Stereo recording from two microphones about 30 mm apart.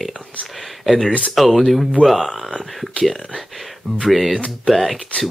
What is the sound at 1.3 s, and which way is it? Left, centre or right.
Speech, centre.